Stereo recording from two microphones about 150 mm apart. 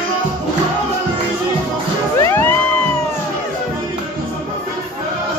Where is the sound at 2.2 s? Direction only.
15° left (ahead or behind).